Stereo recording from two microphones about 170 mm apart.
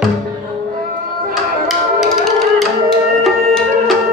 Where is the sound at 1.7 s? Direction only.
Centre (ahead or behind).